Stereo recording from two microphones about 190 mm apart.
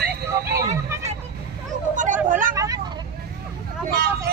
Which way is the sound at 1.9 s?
40° right (ahead or behind).